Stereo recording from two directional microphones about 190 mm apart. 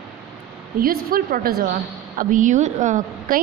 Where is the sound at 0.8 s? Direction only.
50° right (ahead or behind).